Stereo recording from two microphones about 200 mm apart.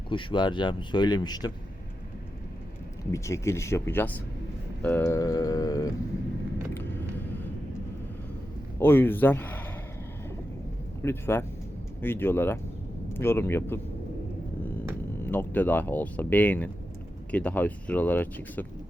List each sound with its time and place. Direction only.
0.1 s speech: 25° left (ahead or behind)
3.1 s speech: 15° left (ahead or behind)
6.7 s vehicle: 10° left (ahead or behind)
8.8 s speech: 10° left (ahead or behind)
11.0 s speech: 10° left (ahead or behind)
15.2 s speech: 10° left (ahead or behind)